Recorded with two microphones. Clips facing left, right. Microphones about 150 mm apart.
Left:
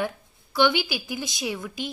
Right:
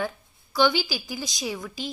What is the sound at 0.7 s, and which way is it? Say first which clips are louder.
Speech: left 1 dB; 60° left (ahead or behind).